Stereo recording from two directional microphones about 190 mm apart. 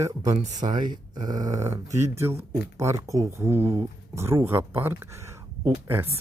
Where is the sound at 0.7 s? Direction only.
25° right (ahead or behind).